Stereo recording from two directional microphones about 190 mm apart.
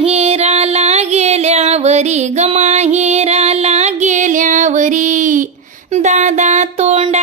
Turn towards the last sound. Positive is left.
turn(degrees=-35)  # may be behind; listen again after turning